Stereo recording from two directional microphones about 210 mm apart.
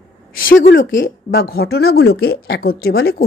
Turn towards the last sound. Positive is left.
turn(degrees=45)  # may be behind; listen again after turning